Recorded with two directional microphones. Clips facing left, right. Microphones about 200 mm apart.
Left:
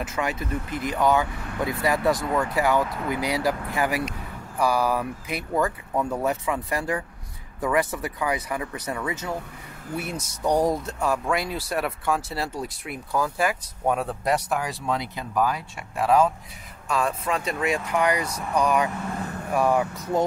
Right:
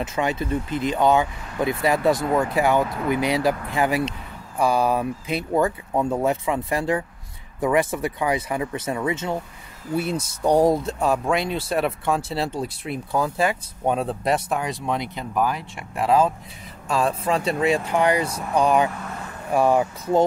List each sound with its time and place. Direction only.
0.0 s speech: 25° right (ahead or behind)